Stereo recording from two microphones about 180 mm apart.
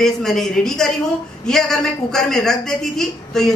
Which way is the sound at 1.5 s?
Centre (ahead or behind).